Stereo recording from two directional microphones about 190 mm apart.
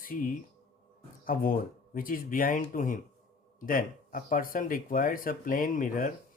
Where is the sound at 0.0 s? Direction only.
45° left (ahead or behind).